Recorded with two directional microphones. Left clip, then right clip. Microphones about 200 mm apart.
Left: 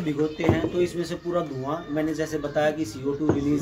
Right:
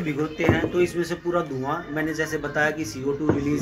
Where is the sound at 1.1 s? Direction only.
10° left (ahead or behind).